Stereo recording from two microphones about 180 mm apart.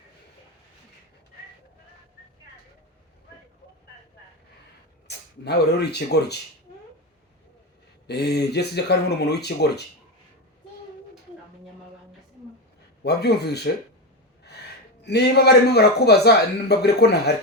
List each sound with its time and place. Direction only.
5.0 s speech: 65° left (ahead or behind)
8.0 s speech: 65° left (ahead or behind)
13.0 s a man's voice: 65° left (ahead or behind)
15.0 s a man's voice: 65° left (ahead or behind)